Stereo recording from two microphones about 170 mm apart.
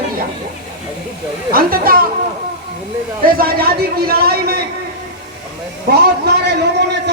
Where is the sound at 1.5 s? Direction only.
60° right (ahead or behind).